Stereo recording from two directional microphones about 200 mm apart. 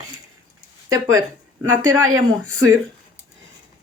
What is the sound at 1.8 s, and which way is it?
Speech, 90° right.